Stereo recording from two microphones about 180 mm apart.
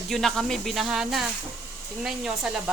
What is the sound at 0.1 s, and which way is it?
Speech, centre (ahead or behind).